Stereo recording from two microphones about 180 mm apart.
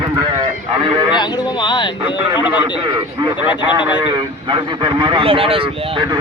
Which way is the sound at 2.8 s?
25° right (ahead or behind).